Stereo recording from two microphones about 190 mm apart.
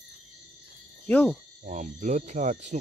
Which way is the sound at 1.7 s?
40° right (ahead or behind).